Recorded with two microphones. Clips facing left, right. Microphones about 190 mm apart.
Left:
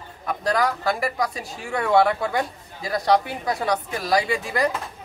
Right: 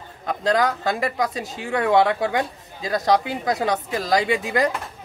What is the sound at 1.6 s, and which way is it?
Speech, 90° right.